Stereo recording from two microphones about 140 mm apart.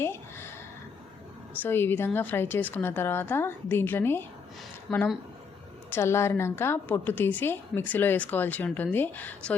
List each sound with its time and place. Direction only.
0.0 s a sound: 20° left (ahead or behind)
1.6 s a woman's voice: 15° left (ahead or behind)
4.9 s speech: centre (ahead or behind)
5.9 s a woman's voice: 20° left (ahead or behind)